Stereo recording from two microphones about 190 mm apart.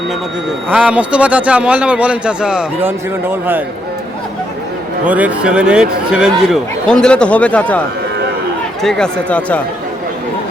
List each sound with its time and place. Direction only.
0.7 s a man's voice: 5° right (ahead or behind)
5.0 s speech: 10° right (ahead or behind)
8.8 s speech: 5° left (ahead or behind)